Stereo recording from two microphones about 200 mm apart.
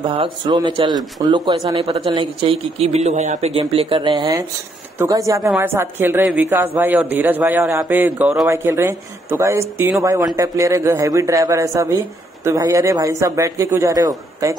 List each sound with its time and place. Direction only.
0.0 s a woman's voice: 25° right (ahead or behind)